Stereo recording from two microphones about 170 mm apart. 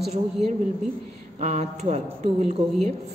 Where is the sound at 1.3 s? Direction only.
40° right (ahead or behind).